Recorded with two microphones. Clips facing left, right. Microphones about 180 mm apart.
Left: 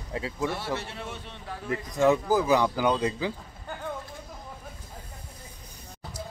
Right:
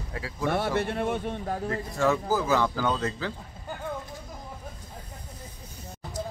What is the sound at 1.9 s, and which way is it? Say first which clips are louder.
Speech: left 3 dB; 15° left (ahead or behind).